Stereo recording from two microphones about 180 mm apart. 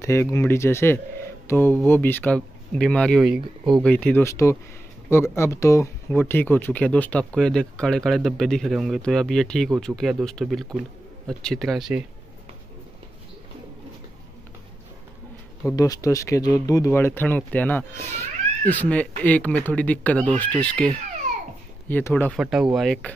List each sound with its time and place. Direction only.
0.0 s speech: 15° left (ahead or behind); by 3.7 s 5° right (ahead or behind)
3.8 s speech: 5° left (ahead or behind)
15.7 s speech: 20° left (ahead or behind)
22.4 s speech: 5° right (ahead or behind)